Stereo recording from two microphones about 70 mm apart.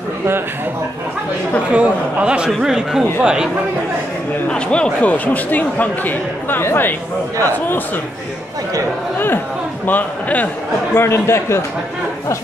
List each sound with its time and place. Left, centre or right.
1.7 s speech: centre
4.5 s speech: centre; by 7.0 s left
9.8 s speech: left
11.0 s a man's voice: left